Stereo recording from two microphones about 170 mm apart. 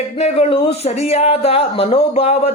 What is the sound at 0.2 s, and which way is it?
Speech, 35° left (ahead or behind).